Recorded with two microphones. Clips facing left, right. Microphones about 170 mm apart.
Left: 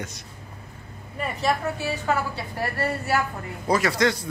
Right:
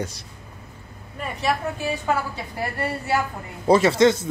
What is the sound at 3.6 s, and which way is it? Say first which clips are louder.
Speech: right 6 dB; 25° right (ahead or behind).